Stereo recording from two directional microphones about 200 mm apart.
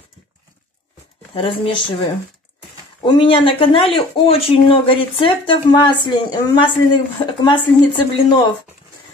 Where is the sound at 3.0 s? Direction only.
25° left (ahead or behind).